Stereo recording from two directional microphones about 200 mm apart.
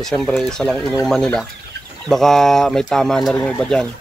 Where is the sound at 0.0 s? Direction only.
5° left (ahead or behind).